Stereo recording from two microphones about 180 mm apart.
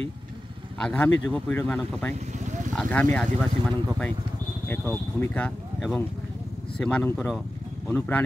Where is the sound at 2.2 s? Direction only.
40° right (ahead or behind).